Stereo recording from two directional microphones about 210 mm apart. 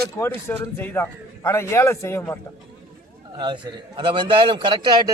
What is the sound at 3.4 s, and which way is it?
A man's voice, 25° right (ahead or behind).